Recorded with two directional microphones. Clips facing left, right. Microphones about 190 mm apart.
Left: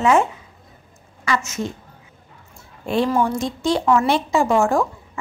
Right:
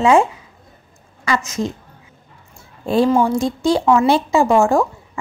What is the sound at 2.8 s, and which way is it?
A woman's voice, 35° right (ahead or behind).